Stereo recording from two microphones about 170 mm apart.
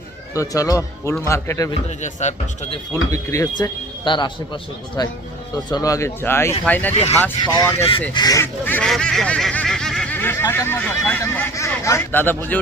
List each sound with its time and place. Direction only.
0.3 s speech: 20° left (ahead or behind)
2.0 s a man's voice: 45° left (ahead or behind)
2.9 s speech: 20° left (ahead or behind)
7.8 s speech: 30° left (ahead or behind)
8.1 s speech: 20° left (ahead or behind)
8.9 s a sound: 5° left (ahead or behind)